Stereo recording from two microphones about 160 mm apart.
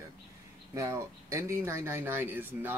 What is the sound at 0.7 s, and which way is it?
Speech, 20° right (ahead or behind).